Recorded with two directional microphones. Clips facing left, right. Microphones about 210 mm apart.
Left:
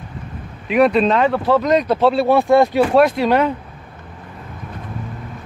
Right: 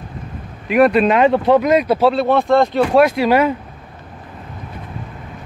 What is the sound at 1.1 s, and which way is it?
Speech, 20° right (ahead or behind).